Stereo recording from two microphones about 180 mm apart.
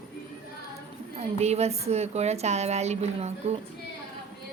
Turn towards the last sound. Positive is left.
turn(degrees=-40)  # may be behind; listen again after turning